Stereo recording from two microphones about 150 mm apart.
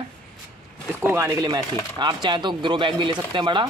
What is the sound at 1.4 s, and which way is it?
Speech, 30° right (ahead or behind).